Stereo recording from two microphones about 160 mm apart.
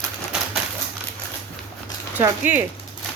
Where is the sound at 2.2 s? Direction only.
15° right (ahead or behind).